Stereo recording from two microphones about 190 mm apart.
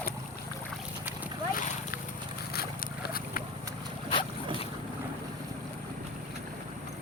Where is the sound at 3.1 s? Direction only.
50° left (ahead or behind).